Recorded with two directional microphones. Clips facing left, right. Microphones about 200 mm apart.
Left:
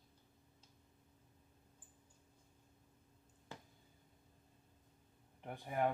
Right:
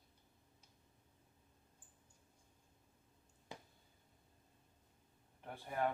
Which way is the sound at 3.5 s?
15° right (ahead or behind).